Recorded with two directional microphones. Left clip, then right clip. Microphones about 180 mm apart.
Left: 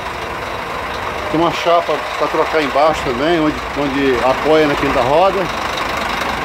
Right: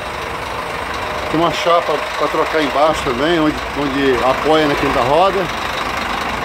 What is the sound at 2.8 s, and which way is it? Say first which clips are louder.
Speech: left 1 dB; centre (ahead or behind).